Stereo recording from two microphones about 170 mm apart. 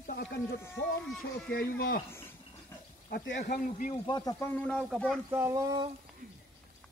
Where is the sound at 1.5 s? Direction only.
60° left (ahead or behind).